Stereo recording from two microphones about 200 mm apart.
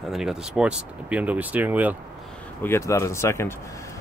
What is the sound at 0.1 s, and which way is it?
Speech, 5° right (ahead or behind).